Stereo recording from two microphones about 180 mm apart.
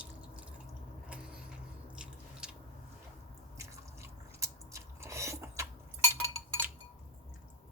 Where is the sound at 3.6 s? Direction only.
15° right (ahead or behind).